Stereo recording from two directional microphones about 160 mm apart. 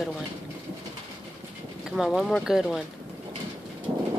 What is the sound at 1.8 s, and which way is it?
Speech, centre (ahead or behind).